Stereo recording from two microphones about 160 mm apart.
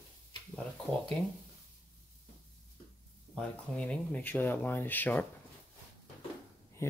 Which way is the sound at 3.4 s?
5° left (ahead or behind).